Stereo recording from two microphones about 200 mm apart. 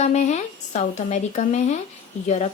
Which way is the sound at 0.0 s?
35° left (ahead or behind).